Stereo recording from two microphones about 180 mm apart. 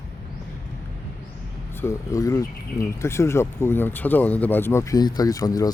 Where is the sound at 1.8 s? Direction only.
20° left (ahead or behind).